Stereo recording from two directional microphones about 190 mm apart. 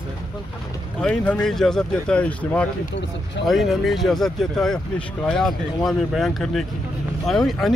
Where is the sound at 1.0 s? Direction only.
5° left (ahead or behind).